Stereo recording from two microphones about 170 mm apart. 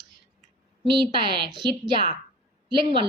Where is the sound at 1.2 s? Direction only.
30° right (ahead or behind).